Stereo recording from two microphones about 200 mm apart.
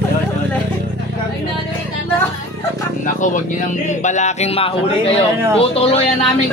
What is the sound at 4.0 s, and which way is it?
Speech, 35° left (ahead or behind).